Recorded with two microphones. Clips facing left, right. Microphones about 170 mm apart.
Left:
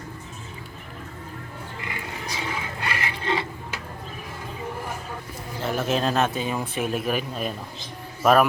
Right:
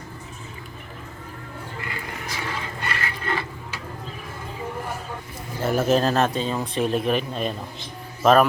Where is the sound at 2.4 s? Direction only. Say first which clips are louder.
Even; 20° left (ahead or behind).